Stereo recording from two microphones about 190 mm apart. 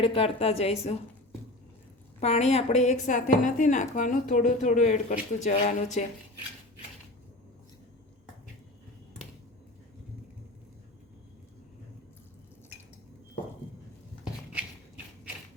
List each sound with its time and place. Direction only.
0.0 s a woman's voice: 30° left (ahead or behind)
2.2 s a woman's voice: 35° left (ahead or behind)
14.5 s a sound: 5° right (ahead or behind)